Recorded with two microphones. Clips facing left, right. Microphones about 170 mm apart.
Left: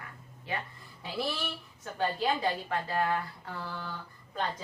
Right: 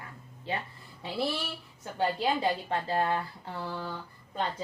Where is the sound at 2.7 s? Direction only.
25° right (ahead or behind).